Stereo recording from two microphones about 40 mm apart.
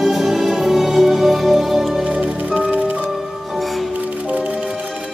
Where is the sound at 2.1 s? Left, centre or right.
Right.